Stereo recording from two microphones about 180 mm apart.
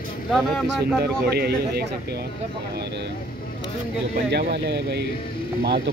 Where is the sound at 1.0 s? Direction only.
65° right (ahead or behind).